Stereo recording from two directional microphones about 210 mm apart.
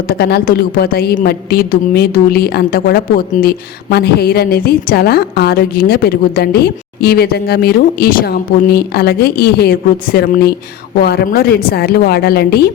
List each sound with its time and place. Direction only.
0.1 s a woman's voice: 50° left (ahead or behind)